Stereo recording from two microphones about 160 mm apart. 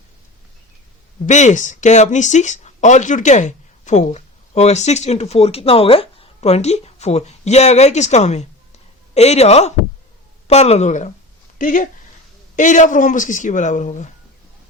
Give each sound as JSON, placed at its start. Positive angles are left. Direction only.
{"t": 1.3, "sound": "a woman's voice", "side_deg": 50}